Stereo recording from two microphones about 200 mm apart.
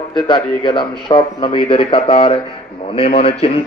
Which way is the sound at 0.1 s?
25° left (ahead or behind).